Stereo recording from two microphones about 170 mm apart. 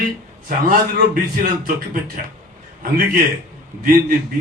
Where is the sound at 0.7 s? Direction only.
55° right (ahead or behind).